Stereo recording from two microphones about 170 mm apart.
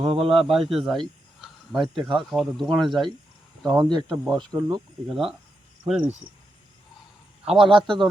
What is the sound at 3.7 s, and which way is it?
Speech, 25° right (ahead or behind).